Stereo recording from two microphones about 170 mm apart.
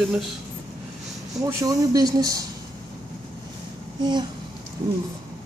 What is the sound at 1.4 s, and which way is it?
Speech, 20° right (ahead or behind).